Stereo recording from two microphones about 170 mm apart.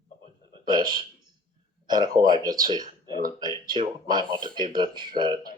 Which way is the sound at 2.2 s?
25° right (ahead or behind).